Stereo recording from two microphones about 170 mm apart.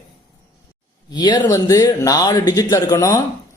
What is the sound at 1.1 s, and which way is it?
Speech, 25° left (ahead or behind).